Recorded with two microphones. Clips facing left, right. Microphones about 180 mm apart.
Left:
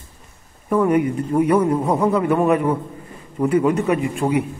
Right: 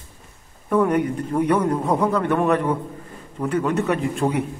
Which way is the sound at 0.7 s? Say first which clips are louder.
Left 2 dB; 5° left (ahead or behind).